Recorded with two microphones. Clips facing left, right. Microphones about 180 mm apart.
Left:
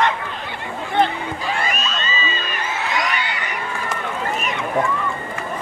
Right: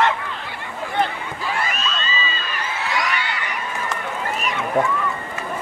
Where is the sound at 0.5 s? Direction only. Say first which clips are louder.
Left 2 dB; 25° left (ahead or behind).